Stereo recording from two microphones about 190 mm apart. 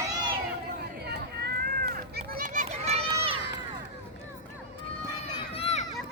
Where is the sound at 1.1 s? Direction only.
55° right (ahead or behind); by 3.4 s 30° right (ahead or behind).